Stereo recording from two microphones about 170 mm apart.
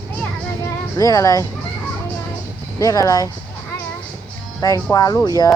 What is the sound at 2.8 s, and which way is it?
Speech, 20° left (ahead or behind).